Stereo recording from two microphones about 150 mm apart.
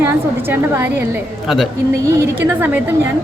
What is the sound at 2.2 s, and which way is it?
Speech, 15° right (ahead or behind).